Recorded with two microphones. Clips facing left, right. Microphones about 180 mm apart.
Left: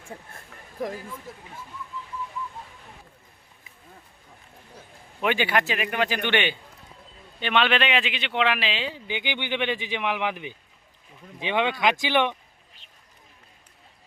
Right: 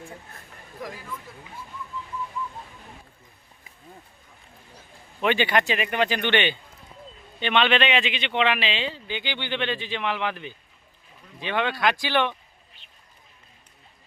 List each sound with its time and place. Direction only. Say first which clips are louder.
5.2 s a man's voice: right 1 dB; 10° left (ahead or behind)